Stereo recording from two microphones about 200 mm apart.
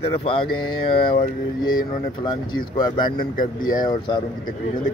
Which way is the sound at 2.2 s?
20° left (ahead or behind).